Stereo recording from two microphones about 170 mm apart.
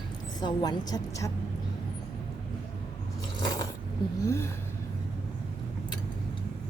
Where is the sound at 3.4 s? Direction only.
25° left (ahead or behind).